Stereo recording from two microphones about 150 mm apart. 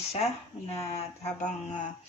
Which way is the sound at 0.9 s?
45° left (ahead or behind).